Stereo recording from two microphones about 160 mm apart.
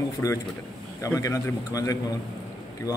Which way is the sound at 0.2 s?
20° left (ahead or behind).